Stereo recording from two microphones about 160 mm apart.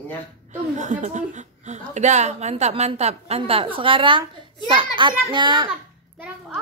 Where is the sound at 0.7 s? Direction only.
50° right (ahead or behind); by 5.7 s 30° right (ahead or behind).